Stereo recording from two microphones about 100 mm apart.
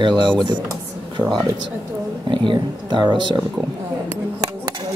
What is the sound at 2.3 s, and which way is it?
Speech, 55° right (ahead or behind).